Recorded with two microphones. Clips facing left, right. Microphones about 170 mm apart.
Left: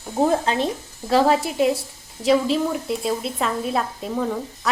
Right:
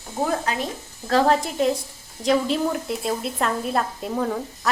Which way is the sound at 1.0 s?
10° left (ahead or behind).